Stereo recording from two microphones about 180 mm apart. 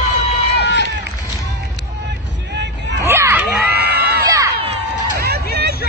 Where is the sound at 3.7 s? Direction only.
65° right (ahead or behind).